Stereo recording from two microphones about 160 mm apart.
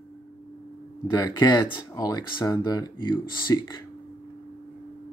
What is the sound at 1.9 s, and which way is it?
Speech, 20° left (ahead or behind).